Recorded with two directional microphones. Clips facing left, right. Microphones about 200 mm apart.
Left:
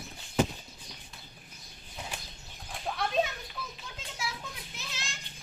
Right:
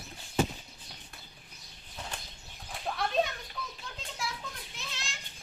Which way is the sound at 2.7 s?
Centre (ahead or behind).